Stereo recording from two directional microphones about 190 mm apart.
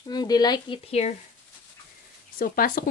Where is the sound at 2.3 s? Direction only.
50° left (ahead or behind).